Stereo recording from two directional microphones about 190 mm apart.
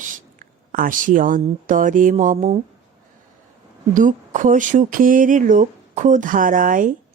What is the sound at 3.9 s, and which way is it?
Speech, 45° right (ahead or behind).